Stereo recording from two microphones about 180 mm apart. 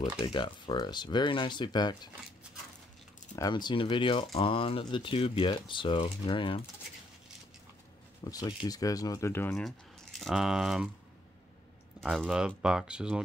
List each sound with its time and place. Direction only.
0.2 s speech: 25° left (ahead or behind)
3.3 s speech: 25° left (ahead or behind)
8.2 s speech: 20° left (ahead or behind); by 10.9 s 5° right (ahead or behind)
12.0 s speech: centre (ahead or behind)